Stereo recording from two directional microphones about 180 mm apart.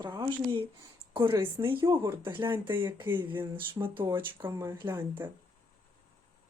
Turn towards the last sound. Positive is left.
turn(degrees=-10)  # may be behind; listen again after turning